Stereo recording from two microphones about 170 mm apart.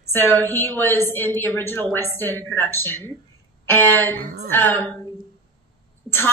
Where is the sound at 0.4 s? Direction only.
10° left (ahead or behind).